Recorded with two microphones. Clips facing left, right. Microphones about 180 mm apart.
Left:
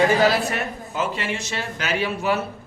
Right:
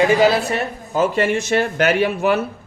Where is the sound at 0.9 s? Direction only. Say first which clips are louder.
Right 9 dB; 50° right (ahead or behind).